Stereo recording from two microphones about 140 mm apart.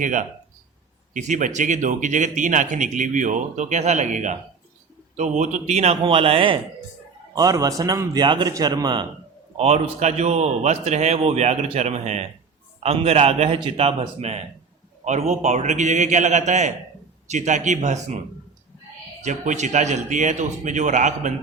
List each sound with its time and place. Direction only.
0.0 s a man's voice: 65° right (ahead or behind); by 6.6 s 40° right (ahead or behind)
7.3 s speech: 25° right (ahead or behind)
9.6 s a man's voice: 50° right (ahead or behind)
19.2 s speech: 60° right (ahead or behind)